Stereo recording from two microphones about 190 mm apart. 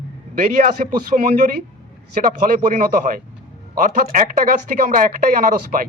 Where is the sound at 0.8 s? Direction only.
40° right (ahead or behind).